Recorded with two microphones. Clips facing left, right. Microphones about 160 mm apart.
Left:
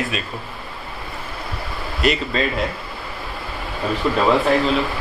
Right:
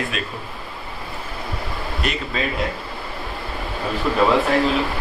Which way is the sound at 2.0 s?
Centre (ahead or behind).